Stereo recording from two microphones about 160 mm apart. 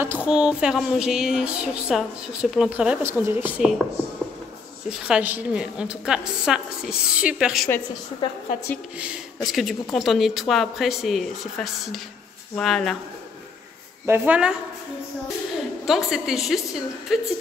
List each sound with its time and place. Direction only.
0.0 s a woman's voice: 10° right (ahead or behind)
4.9 s a woman's voice: 5° right (ahead or behind)
8.2 s a woman's voice: 35° left (ahead or behind)
8.9 s a woman's voice: 5° right (ahead or behind)
14.0 s speech: 10° right (ahead or behind)
15.8 s a woman's voice: centre (ahead or behind)